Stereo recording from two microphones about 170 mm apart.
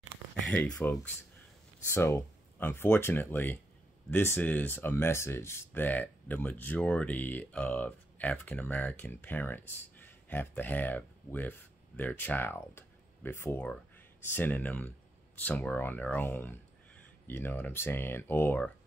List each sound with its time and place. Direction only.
0.5 s speech: 10° left (ahead or behind)